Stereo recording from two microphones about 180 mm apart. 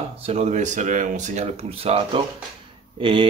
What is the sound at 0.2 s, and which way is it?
A man's voice, 35° right (ahead or behind).